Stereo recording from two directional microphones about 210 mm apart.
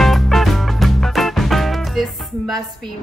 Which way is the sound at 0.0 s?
Centre (ahead or behind).